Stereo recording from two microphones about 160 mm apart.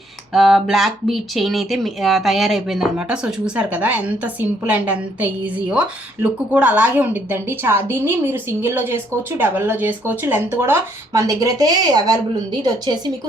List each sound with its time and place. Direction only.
0.3 s speech: centre (ahead or behind); by 13.0 s 25° right (ahead or behind)